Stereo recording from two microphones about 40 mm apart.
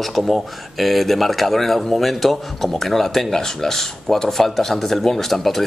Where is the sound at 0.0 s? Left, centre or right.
Centre.